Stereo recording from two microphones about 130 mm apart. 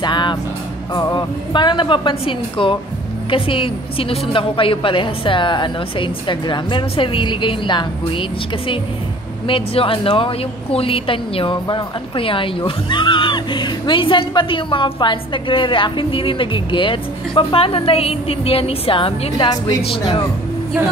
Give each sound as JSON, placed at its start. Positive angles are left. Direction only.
{"t": 0.0, "sound": "music", "side_deg": 35}
{"t": 0.9, "sound": "a woman's voice", "side_deg": 35}